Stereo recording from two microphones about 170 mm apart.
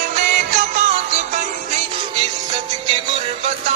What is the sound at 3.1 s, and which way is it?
Music, 35° right (ahead or behind).